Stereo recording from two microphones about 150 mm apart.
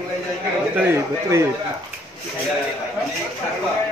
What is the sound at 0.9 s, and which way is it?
Speech, 20° right (ahead or behind).